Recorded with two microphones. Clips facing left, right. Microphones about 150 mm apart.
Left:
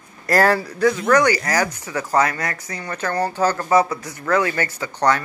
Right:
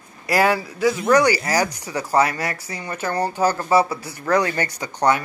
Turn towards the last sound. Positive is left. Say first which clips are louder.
# even
turn(degrees=-10)  # may be behind; listen again after turning